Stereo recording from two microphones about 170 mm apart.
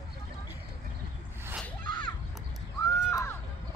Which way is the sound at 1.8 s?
25° left (ahead or behind).